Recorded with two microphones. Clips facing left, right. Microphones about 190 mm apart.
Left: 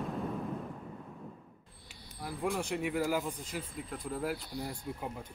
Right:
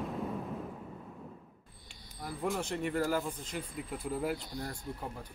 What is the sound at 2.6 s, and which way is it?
Speech, 10° left (ahead or behind).